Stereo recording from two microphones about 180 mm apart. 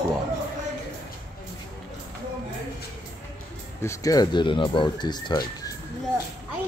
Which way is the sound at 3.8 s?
15° left (ahead or behind).